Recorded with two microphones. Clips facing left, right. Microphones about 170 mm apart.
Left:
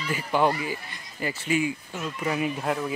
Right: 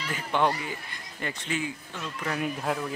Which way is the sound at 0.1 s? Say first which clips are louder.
Left 3 dB; 5° left (ahead or behind).